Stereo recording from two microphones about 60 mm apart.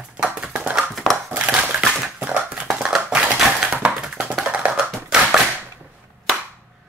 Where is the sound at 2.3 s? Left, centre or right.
Centre.